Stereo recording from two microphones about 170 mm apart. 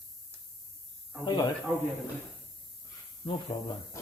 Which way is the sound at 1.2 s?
25° left (ahead or behind).